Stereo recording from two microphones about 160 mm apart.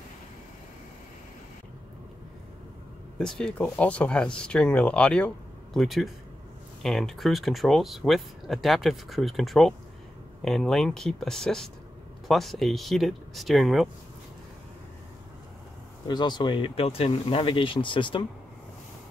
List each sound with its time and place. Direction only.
3.2 s speech: 5° left (ahead or behind)
16.1 s speech: 30° left (ahead or behind)